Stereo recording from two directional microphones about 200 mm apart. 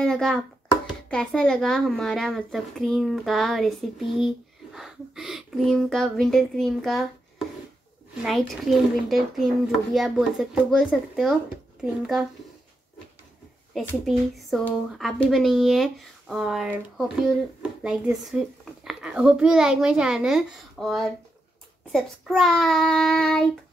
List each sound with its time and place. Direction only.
0.0 s a child's voice: 5° left (ahead or behind)
4.7 s a sound: centre (ahead or behind)
8.2 s speech: centre (ahead or behind)
13.7 s speech: centre (ahead or behind)